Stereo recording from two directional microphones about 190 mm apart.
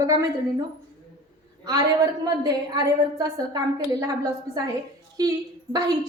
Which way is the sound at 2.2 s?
20° right (ahead or behind).